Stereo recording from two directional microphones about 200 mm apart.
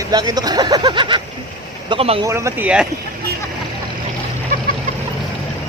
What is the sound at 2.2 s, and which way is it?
Speech, 15° right (ahead or behind).